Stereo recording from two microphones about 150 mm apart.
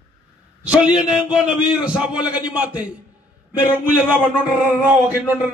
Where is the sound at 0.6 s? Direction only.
5° right (ahead or behind).